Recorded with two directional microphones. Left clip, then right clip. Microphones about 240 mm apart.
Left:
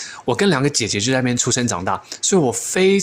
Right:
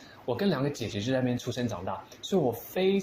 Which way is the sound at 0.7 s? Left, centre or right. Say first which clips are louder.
Left 14 dB; left.